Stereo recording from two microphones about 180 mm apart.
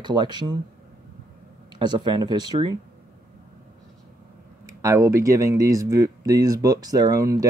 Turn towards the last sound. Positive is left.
turn(degrees=-20)  # may be behind; listen again after turning